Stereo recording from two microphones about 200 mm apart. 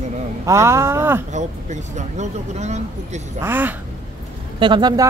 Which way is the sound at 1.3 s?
35° right (ahead or behind).